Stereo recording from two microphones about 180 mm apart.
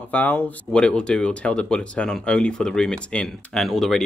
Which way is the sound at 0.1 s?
10° left (ahead or behind).